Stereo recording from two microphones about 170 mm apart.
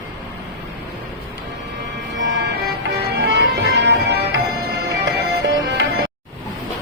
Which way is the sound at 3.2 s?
90° right.